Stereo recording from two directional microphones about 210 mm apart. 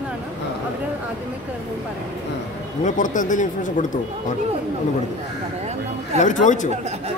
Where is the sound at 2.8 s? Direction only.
35° left (ahead or behind).